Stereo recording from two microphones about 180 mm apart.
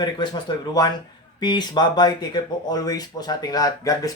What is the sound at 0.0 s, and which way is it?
Speech, 25° left (ahead or behind).